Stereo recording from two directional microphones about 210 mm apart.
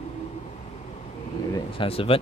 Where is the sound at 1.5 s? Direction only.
25° left (ahead or behind).